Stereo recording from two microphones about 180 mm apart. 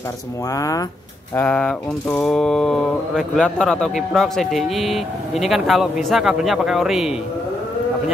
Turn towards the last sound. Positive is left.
turn(degrees=0)  # may be behind; listen again after turning